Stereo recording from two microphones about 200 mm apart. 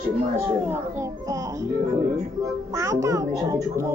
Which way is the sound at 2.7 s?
15° right (ahead or behind).